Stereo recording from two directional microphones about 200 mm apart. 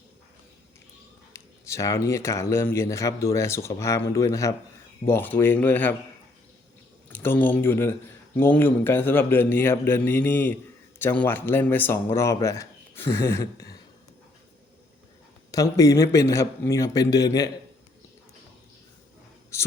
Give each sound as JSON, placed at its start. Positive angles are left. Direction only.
{"t": 1.3, "sound": "speech", "side_deg": 15}
{"t": 7.1, "sound": "speech", "side_deg": 10}
{"t": 15.5, "sound": "speech", "side_deg": 15}
{"t": 19.5, "sound": "whispering", "side_deg": 15}